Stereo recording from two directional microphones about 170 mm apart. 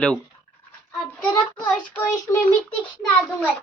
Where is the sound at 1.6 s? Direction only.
10° left (ahead or behind).